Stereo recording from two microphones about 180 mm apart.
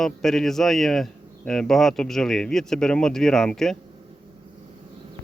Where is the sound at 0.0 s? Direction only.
Centre (ahead or behind).